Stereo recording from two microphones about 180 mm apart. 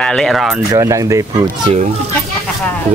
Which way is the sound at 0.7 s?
15° right (ahead or behind).